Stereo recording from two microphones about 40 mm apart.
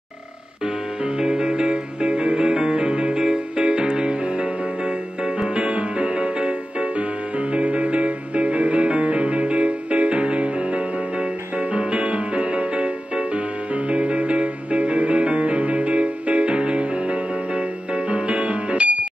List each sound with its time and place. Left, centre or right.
1.0 s music: right